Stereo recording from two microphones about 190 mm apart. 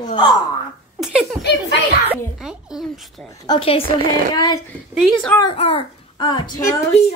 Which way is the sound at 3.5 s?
30° left (ahead or behind).